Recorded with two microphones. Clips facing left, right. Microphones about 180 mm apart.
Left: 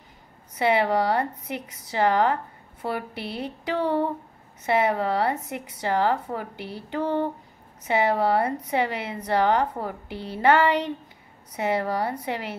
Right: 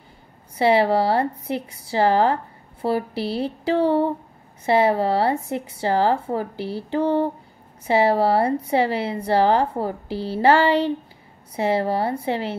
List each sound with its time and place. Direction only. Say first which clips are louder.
0.6 s a woman's voice: right 4 dB; 30° right (ahead or behind)